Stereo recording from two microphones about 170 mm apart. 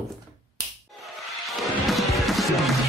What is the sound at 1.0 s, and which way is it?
Music, centre (ahead or behind).